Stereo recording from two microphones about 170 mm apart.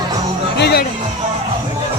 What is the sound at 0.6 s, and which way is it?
Speech, 70° left (ahead or behind).